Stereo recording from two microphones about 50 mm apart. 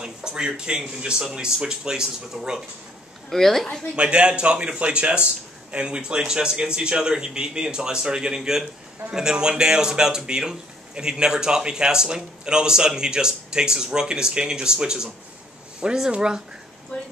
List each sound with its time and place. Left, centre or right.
0.0 s a man's voice: centre
3.3 s a woman's voice: centre
3.9 s a man's voice: centre